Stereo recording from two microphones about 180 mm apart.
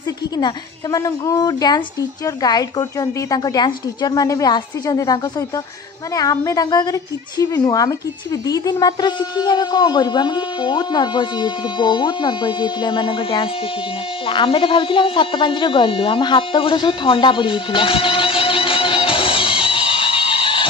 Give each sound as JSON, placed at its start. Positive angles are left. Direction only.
{"t": 0.9, "sound": "a woman's voice", "side_deg": 20}